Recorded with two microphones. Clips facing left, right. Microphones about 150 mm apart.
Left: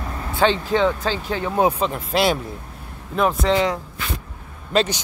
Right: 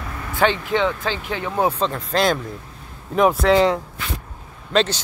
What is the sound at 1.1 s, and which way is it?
Speech, 40° left (ahead or behind).